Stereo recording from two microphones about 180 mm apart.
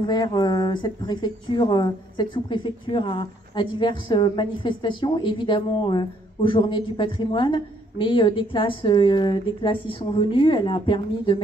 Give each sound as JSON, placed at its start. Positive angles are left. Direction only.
{"t": 0.0, "sound": "speech", "side_deg": 25}